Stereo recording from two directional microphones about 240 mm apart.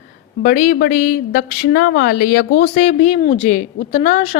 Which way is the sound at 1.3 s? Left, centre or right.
Left.